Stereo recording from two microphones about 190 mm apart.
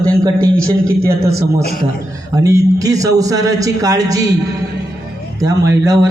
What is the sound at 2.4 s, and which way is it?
A man's voice, 15° right (ahead or behind).